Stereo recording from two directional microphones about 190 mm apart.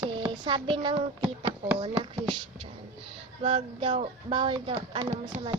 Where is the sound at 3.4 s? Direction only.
30° right (ahead or behind).